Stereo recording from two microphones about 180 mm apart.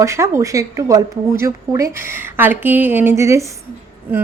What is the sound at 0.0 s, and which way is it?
Speech, 15° right (ahead or behind).